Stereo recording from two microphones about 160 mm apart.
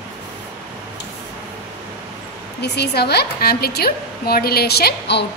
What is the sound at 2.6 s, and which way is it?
A woman's voice, 90° left.